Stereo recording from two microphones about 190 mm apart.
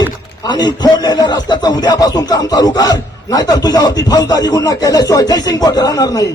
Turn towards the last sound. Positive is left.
turn(degrees=20)  # may be behind; listen again after turning